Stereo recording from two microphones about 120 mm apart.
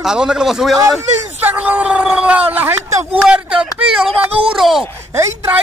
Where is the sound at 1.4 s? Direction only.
15° right (ahead or behind).